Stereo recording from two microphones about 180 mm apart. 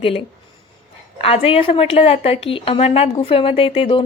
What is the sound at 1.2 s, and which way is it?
A woman's voice, 30° left (ahead or behind).